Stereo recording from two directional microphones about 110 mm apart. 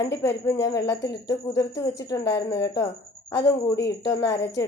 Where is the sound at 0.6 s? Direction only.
35° left (ahead or behind).